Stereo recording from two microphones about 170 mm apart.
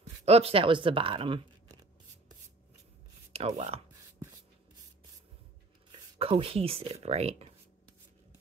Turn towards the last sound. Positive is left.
turn(degrees=-40)  # may be behind; listen again after turning